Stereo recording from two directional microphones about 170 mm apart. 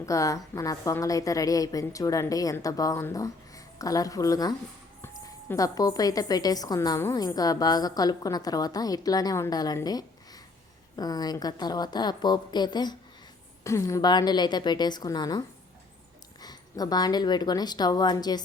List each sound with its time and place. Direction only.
0.0 s a woman's voice: 20° left (ahead or behind)